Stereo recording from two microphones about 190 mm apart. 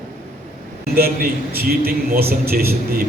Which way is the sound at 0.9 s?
50° right (ahead or behind).